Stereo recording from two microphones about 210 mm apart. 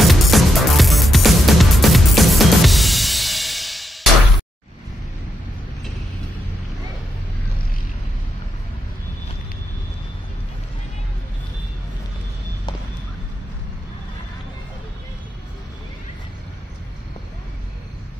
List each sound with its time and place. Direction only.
0.0 s music: centre (ahead or behind)